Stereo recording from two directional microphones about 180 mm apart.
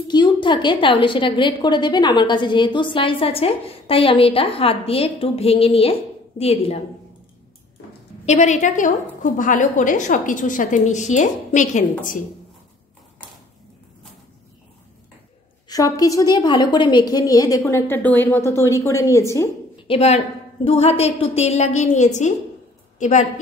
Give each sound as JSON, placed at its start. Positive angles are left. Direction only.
{"t": 0.1, "sound": "a woman's voice", "side_deg": 25}
{"t": 8.3, "sound": "a woman's voice", "side_deg": 40}
{"t": 15.7, "sound": "a woman's voice", "side_deg": 20}
{"t": 19.9, "sound": "a woman's voice", "side_deg": 35}